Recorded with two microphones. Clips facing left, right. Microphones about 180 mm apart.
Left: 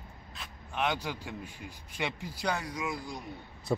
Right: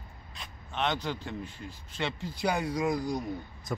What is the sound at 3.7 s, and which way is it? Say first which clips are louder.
Speech: left 5 dB; 25° left (ahead or behind).